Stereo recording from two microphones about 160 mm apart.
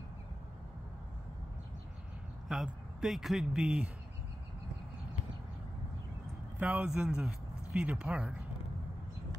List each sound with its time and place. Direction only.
2.4 s speech: 5° right (ahead or behind)
6.6 s speech: 10° right (ahead or behind)